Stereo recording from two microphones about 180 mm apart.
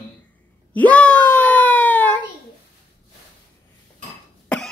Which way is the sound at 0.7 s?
5° left (ahead or behind).